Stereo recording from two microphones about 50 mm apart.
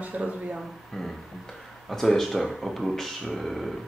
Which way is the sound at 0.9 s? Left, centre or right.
Centre.